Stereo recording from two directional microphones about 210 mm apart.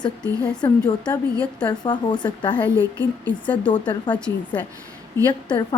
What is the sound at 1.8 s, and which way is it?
Speech, 20° left (ahead or behind).